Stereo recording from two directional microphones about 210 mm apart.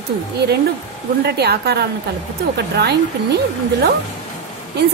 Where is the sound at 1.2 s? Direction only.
50° right (ahead or behind).